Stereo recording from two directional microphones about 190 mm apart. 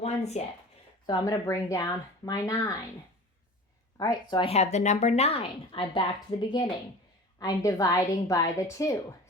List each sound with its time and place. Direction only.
0.0 s a sound: 35° left (ahead or behind)
1.0 s speech: 20° left (ahead or behind)
3.9 s a woman's voice: 20° left (ahead or behind)